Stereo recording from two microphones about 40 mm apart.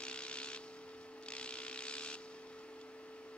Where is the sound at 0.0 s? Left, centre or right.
Left.